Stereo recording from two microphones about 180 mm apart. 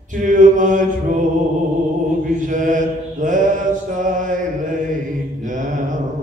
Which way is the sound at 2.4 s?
45° right (ahead or behind).